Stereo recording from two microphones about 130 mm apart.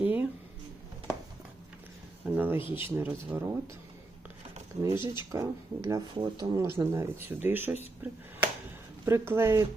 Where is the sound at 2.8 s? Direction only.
15° right (ahead or behind).